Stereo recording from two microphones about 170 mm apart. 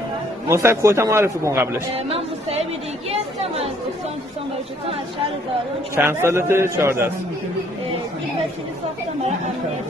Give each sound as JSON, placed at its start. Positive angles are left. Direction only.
{"t": 0.5, "sound": "a man's voice", "side_deg": -15}
{"t": 2.0, "sound": "a woman's voice", "side_deg": -35}
{"t": 5.9, "sound": "a man's voice", "side_deg": -15}